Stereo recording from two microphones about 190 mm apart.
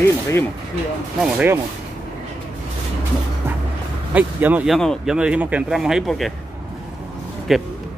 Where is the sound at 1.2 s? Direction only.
10° right (ahead or behind).